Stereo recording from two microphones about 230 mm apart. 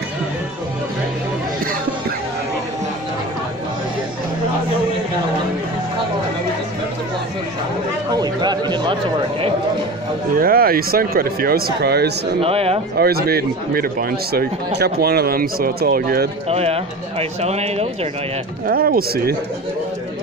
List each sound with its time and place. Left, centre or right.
8.1 s a sound: centre
10.3 s speech: right
12.4 s speech: right
12.9 s speech: right
16.4 s speech: right
18.7 s speech: right